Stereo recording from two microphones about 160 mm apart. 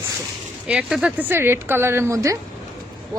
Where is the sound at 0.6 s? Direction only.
5° right (ahead or behind).